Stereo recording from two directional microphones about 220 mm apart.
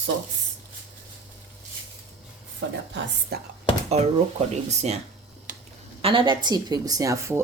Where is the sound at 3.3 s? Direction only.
45° right (ahead or behind).